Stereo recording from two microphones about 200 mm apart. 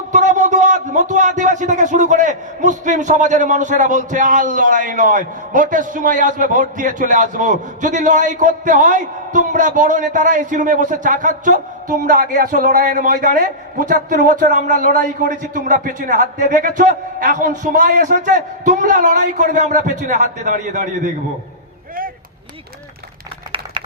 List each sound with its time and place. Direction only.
0.1 s a man's voice: 40° right (ahead or behind)